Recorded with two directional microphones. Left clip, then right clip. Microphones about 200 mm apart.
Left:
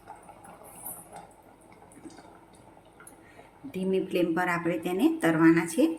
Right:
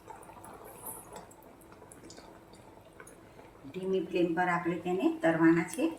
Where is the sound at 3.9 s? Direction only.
45° left (ahead or behind).